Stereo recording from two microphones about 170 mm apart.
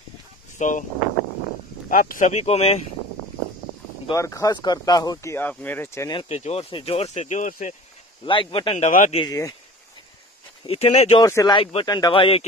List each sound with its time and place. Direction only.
0.6 s speech: 50° left (ahead or behind)
1.9 s speech: 55° left (ahead or behind); by 2.8 s 35° left (ahead or behind)
4.1 s speech: 20° left (ahead or behind)
6.1 s speech: 40° left (ahead or behind)
8.3 s speech: 30° left (ahead or behind)
8.7 s speech: 45° left (ahead or behind)
9.2 s speech: 20° left (ahead or behind)
10.6 s speech: 35° left (ahead or behind)
11.1 s speech: 20° left (ahead or behind)